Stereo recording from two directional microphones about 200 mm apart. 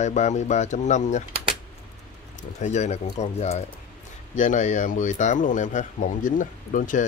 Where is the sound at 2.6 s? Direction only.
35° left (ahead or behind).